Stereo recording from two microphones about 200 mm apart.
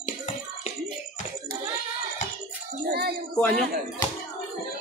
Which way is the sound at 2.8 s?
50° right (ahead or behind).